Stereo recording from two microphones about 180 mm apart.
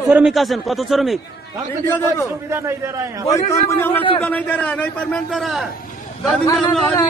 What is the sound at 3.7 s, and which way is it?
A man's voice, 10° left (ahead or behind).